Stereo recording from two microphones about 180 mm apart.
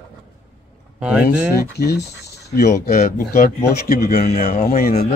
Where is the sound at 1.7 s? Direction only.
65° left (ahead or behind).